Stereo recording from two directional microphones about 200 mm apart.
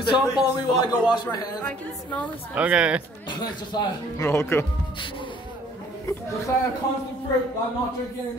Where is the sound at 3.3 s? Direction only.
20° left (ahead or behind).